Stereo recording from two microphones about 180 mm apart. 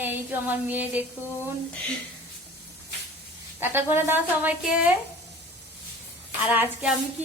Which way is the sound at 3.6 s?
10° right (ahead or behind).